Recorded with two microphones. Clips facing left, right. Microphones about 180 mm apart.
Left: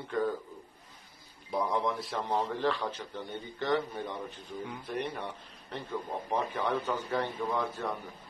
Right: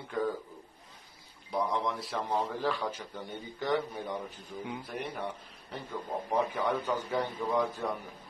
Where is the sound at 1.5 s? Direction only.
Centre (ahead or behind).